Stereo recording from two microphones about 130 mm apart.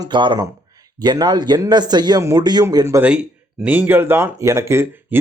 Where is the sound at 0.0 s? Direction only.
35° right (ahead or behind).